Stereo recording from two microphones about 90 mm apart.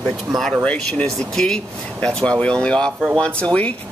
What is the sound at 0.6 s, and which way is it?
Speech, 15° left (ahead or behind).